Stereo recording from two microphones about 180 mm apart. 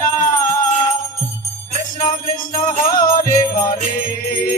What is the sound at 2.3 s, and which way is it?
Music, 50° left (ahead or behind).